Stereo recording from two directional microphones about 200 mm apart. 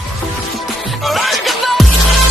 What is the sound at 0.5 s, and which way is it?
Music, centre (ahead or behind).